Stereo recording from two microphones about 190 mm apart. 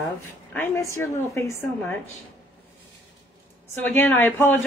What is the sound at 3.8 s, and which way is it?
Speech, 10° left (ahead or behind).